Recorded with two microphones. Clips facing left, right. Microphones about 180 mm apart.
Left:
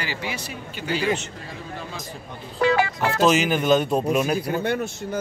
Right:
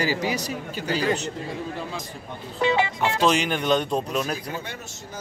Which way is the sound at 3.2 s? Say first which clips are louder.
Left 4 dB; 5° left (ahead or behind).